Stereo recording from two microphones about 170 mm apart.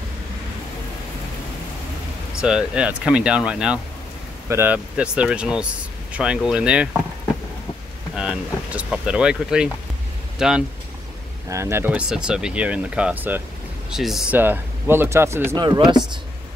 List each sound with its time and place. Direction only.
2.4 s speech: 5° right (ahead or behind)
8.2 s speech: 5° right (ahead or behind)
11.4 s speech: 15° right (ahead or behind)
15.6 s speech: 25° right (ahead or behind)